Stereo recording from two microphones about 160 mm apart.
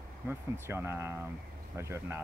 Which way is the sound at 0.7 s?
15° right (ahead or behind).